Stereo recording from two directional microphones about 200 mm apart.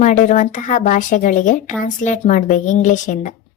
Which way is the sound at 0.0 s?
35° left (ahead or behind).